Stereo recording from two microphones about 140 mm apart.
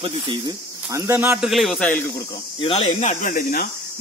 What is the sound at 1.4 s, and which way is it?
Speech, centre (ahead or behind).